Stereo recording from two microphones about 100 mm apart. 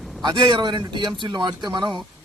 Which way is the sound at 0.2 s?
50° right (ahead or behind).